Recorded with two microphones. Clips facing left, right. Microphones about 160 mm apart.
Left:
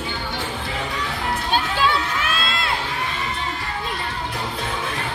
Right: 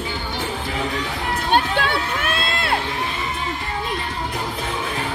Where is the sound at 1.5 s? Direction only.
60° right (ahead or behind).